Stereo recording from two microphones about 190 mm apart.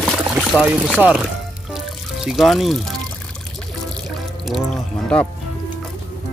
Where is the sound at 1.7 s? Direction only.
Centre (ahead or behind).